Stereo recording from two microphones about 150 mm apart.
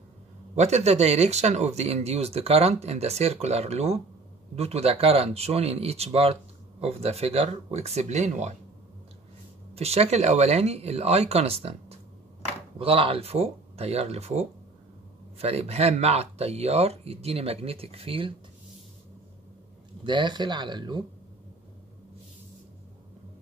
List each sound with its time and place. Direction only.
0.6 s speech: 45° right (ahead or behind)
9.8 s speech: 45° right (ahead or behind)
20.0 s speech: 30° right (ahead or behind)